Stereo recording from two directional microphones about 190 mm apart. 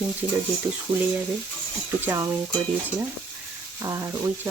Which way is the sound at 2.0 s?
10° right (ahead or behind).